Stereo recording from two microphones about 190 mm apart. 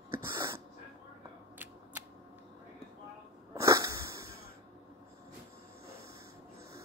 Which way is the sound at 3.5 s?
15° right (ahead or behind).